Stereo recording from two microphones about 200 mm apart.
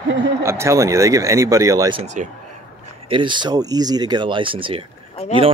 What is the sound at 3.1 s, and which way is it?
Speech, 25° right (ahead or behind).